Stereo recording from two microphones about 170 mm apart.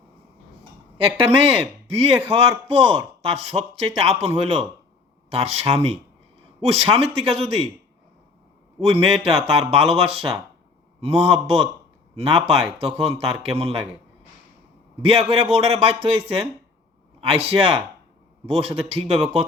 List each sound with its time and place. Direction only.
0.6 s a sound: 35° right (ahead or behind)
1.9 s speech: 35° right (ahead or behind)
8.8 s speech: 35° right (ahead or behind)
15.3 s speech: 35° right (ahead or behind)